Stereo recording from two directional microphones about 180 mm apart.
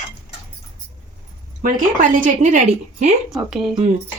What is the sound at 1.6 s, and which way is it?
A woman's voice, 45° right (ahead or behind).